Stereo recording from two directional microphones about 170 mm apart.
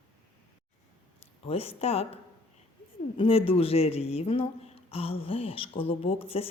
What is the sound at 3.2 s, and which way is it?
A woman's voice, 35° left (ahead or behind).